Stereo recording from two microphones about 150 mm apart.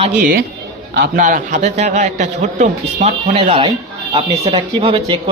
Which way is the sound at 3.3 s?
35° right (ahead or behind).